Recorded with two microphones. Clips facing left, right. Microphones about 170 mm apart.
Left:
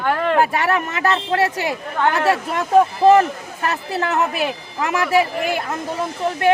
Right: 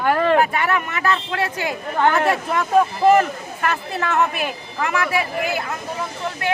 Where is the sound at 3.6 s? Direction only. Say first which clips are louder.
Left 1 dB; 35° left (ahead or behind).